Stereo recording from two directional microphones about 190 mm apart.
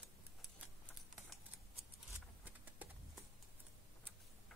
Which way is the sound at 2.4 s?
10° right (ahead or behind).